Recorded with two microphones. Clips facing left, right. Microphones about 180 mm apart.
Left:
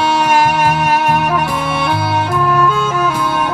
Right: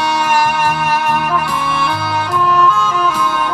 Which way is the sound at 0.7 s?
50° left (ahead or behind).